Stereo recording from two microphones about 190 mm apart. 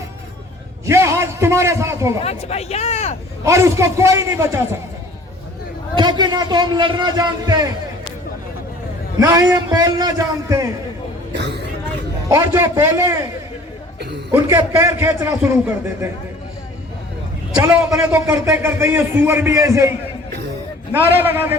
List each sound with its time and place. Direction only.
0.9 s a man's voice: 15° right (ahead or behind)
2.2 s speech: 35° left (ahead or behind)
3.4 s a man's voice: 15° right (ahead or behind)
6.0 s a man's voice: 25° right (ahead or behind)
9.2 s a man's voice: 20° right (ahead or behind)
11.3 s a sound: 65° right (ahead or behind)
12.3 s a man's voice: 15° right (ahead or behind)
14.3 s a man's voice: 15° right (ahead or behind)
17.5 s a man's voice: 10° right (ahead or behind)
20.9 s a man's voice: 10° right (ahead or behind)